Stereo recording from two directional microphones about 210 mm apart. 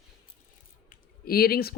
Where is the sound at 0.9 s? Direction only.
45° left (ahead or behind).